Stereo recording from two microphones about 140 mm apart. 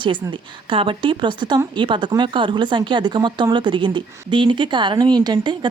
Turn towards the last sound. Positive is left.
turn(degrees=-35)  # may be behind; listen again after turning